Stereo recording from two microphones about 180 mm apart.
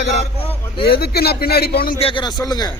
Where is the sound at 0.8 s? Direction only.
60° left (ahead or behind).